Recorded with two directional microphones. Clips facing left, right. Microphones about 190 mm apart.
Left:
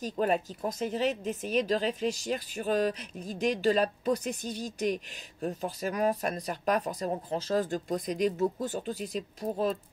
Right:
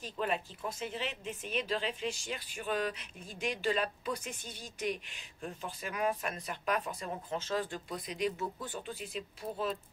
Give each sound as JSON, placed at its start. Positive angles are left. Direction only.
{"t": 0.0, "sound": "speech", "side_deg": 40}